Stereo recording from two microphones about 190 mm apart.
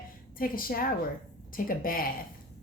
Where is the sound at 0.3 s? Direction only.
50° left (ahead or behind).